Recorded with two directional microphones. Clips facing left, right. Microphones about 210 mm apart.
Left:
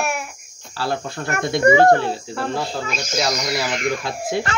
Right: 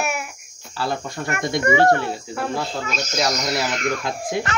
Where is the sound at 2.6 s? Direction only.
10° left (ahead or behind).